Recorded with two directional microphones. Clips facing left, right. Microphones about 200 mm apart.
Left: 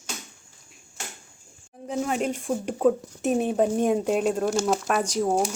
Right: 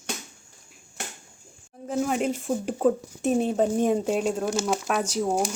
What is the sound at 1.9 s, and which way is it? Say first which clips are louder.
Speech: right 1 dB; centre (ahead or behind).